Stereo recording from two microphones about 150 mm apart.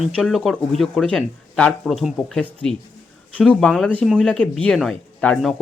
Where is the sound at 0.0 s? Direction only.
Centre (ahead or behind).